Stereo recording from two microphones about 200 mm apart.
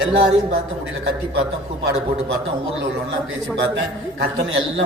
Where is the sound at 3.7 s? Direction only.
65° right (ahead or behind).